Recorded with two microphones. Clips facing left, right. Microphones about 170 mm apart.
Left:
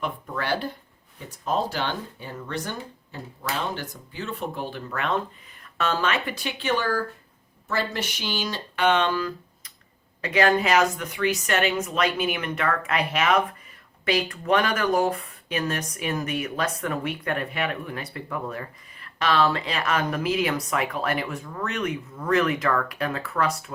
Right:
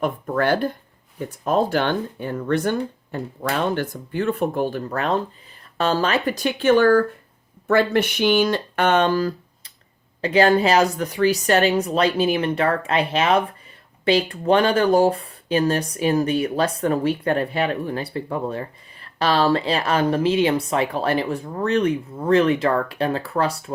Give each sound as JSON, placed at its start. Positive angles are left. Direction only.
{"t": 0.0, "sound": "speech", "side_deg": -50}